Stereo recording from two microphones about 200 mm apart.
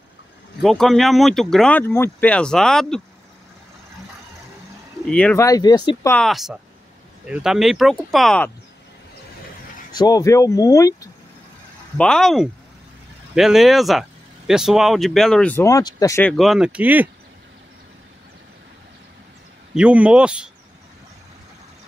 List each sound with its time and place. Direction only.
0.6 s speech: centre (ahead or behind)
5.1 s speech: 10° left (ahead or behind)
6.1 s speech: centre (ahead or behind)
9.9 s speech: 20° left (ahead or behind)
12.0 s speech: centre (ahead or behind)
16.3 s speech: centre (ahead or behind)
19.7 s speech: 5° right (ahead or behind)